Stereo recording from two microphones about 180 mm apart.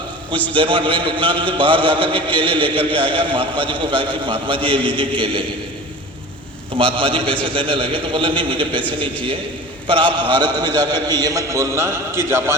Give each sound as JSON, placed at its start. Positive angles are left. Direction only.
{"t": 0.5, "sound": "a man's voice", "side_deg": -30}
{"t": 6.7, "sound": "a man's voice", "side_deg": -30}
{"t": 9.8, "sound": "a man's voice", "side_deg": -30}